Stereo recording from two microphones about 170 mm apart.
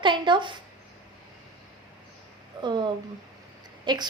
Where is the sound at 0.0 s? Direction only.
30° right (ahead or behind).